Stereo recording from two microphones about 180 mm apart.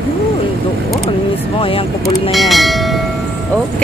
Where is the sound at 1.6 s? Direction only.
30° left (ahead or behind).